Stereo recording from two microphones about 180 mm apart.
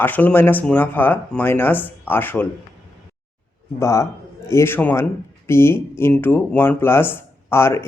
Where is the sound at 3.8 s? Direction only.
15° left (ahead or behind).